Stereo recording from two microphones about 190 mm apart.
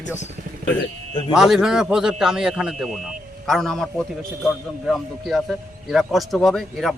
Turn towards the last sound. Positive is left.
turn(degrees=0)  # may be behind; listen again after turning